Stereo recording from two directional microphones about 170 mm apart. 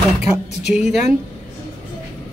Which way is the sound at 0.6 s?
5° right (ahead or behind).